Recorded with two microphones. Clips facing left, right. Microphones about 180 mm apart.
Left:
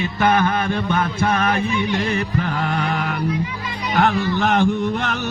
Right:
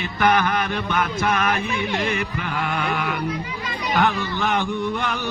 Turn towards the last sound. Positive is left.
turn(degrees=50)  # may be behind; listen again after turning